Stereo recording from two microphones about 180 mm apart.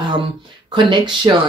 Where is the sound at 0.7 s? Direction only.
25° right (ahead or behind).